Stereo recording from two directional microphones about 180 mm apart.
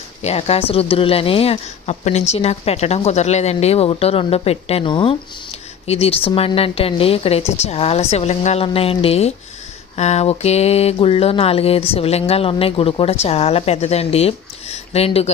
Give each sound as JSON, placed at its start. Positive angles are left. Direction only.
{"t": 0.2, "sound": "speech", "side_deg": 35}